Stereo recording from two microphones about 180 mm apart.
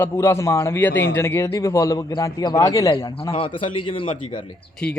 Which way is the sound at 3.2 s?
30° left (ahead or behind).